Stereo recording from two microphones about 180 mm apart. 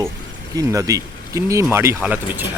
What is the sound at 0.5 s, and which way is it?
Speech, 20° right (ahead or behind).